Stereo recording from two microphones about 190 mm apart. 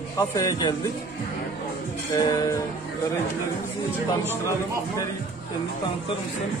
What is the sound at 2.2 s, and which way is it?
Speech, 20° left (ahead or behind).